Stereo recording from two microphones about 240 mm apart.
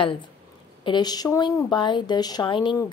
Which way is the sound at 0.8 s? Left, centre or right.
Centre.